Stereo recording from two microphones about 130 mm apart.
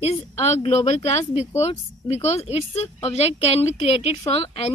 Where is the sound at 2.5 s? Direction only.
55° left (ahead or behind).